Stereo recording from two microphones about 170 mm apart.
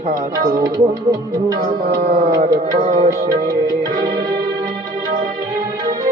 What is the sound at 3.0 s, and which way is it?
Music, 50° right (ahead or behind).